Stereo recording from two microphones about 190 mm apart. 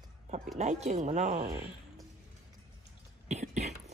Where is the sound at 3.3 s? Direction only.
35° right (ahead or behind).